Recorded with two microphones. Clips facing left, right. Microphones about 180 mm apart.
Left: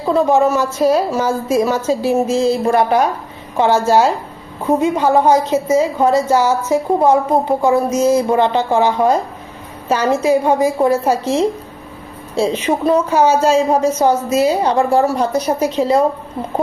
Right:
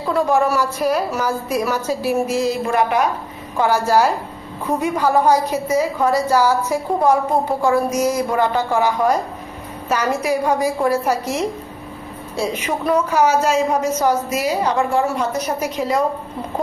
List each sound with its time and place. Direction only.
0.1 s a woman's voice: 25° left (ahead or behind)